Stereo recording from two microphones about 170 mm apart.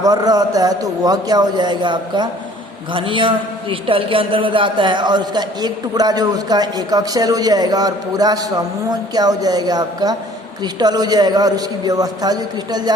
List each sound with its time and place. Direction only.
0.0 s a man's voice: 25° right (ahead or behind)